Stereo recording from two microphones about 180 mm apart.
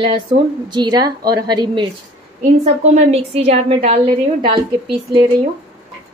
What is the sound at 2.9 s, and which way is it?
A woman's voice, 35° right (ahead or behind).